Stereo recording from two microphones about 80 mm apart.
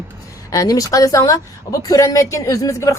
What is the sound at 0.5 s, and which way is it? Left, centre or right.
A woman's voice, left.